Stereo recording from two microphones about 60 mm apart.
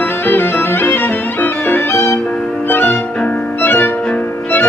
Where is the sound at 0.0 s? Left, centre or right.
Left.